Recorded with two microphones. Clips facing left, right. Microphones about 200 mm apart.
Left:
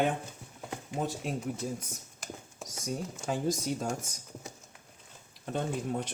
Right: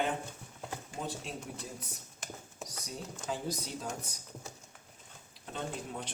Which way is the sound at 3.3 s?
45° left (ahead or behind).